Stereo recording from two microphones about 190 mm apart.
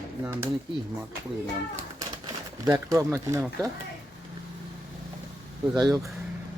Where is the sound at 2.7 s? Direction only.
15° right (ahead or behind).